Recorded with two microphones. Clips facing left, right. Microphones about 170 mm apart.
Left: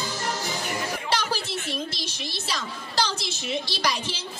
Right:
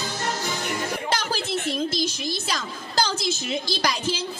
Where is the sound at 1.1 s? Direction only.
50° right (ahead or behind).